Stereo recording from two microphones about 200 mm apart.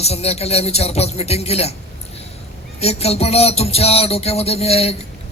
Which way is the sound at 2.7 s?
30° left (ahead or behind).